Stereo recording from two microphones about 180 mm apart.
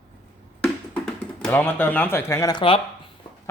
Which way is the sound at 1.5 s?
10° left (ahead or behind).